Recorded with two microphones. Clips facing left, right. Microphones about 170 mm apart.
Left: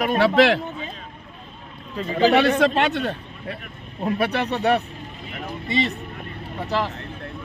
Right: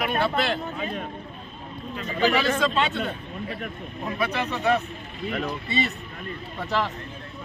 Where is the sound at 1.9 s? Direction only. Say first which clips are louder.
Left 5 dB; 30° left (ahead or behind).